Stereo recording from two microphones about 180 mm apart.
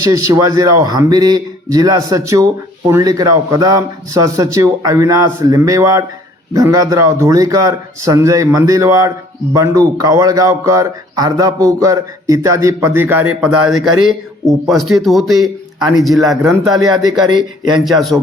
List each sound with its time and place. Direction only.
0.0 s a man's voice: 20° right (ahead or behind); by 16.9 s centre (ahead or behind)
17.2 s a man's voice: 25° right (ahead or behind)
17.8 s a man's voice: centre (ahead or behind)